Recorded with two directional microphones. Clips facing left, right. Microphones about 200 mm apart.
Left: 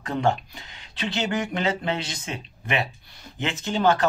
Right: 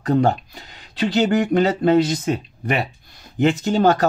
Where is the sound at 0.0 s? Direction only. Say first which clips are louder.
Right 6 dB; 40° right (ahead or behind).